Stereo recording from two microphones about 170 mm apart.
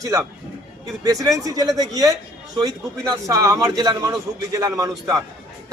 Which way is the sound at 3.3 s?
20° right (ahead or behind).